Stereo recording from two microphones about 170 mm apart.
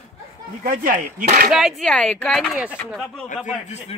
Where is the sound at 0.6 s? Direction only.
55° right (ahead or behind).